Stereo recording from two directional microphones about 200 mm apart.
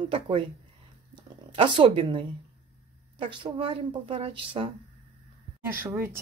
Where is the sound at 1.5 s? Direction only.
25° right (ahead or behind).